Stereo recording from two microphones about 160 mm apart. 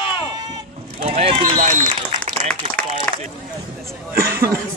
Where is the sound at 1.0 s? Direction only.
35° right (ahead or behind).